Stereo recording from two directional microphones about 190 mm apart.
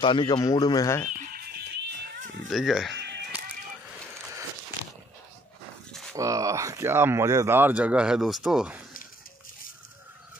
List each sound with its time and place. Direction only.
0.0 s speech: 25° left (ahead or behind)
1.3 s music: 60° right (ahead or behind)
2.5 s speech: centre (ahead or behind)
3.0 s music: 60° right (ahead or behind)
6.1 s speech: 15° right (ahead or behind)